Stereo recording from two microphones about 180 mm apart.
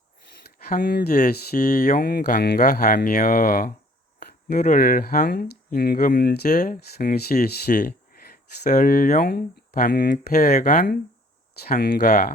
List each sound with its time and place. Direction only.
0.7 s speech: 55° left (ahead or behind)
4.2 s a sound: 60° left (ahead or behind)
4.6 s speech: 50° left (ahead or behind)
6.5 s speech: 45° left (ahead or behind)
6.7 s speech: 60° left (ahead or behind)
7.7 s a sound: 50° left (ahead or behind)
8.6 s speech: 45° left (ahead or behind)
10.3 s speech: 40° left (ahead or behind)